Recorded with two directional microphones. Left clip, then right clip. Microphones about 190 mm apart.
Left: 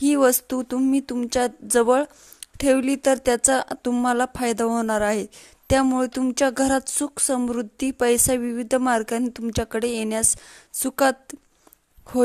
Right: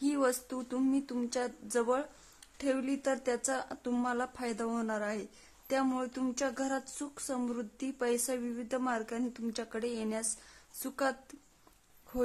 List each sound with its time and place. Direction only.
0.0 s speech: 40° left (ahead or behind)